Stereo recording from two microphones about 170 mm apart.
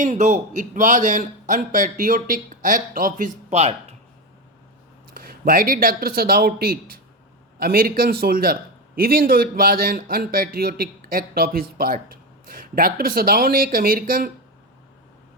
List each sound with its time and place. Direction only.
0.0 s a man's voice: 45° right (ahead or behind)
5.1 s a man's voice: 60° right (ahead or behind)